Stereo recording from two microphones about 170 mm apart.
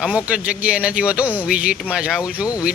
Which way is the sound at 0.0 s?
5° right (ahead or behind).